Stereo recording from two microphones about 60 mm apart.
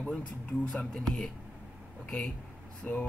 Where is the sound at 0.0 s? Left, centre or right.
Centre.